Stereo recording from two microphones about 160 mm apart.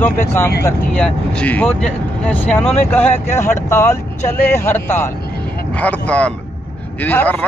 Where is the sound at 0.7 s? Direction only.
5° left (ahead or behind).